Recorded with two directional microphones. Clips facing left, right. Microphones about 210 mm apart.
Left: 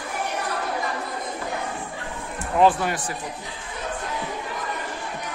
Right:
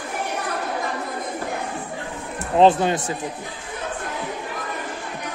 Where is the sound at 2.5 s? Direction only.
25° right (ahead or behind).